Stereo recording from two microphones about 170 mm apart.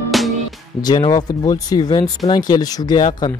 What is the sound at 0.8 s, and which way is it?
Speech, 25° left (ahead or behind).